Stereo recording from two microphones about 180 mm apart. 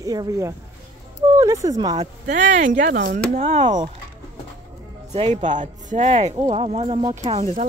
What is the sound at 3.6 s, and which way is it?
Speech, 25° right (ahead or behind).